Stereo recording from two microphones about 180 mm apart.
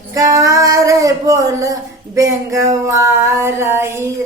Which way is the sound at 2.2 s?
15° right (ahead or behind).